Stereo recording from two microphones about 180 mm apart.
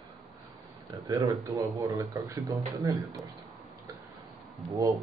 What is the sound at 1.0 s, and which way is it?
A man's voice, 20° right (ahead or behind).